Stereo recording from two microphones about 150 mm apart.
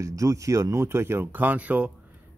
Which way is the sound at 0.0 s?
20° right (ahead or behind).